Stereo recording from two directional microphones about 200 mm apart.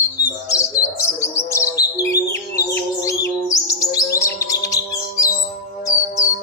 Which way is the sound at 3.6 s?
15° left (ahead or behind).